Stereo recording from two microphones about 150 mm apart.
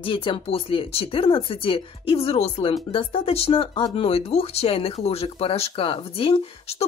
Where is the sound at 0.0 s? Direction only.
35° left (ahead or behind).